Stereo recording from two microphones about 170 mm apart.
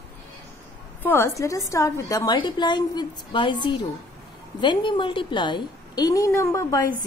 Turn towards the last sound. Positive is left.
turn(degrees=20)  # may be behind; listen again after turning